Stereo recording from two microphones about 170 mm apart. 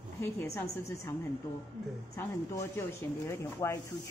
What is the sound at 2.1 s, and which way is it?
Speech, 15° left (ahead or behind).